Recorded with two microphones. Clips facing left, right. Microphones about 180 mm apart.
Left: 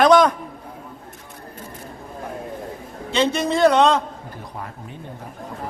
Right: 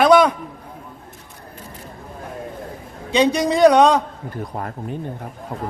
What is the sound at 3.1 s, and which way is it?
Speech, 15° right (ahead or behind).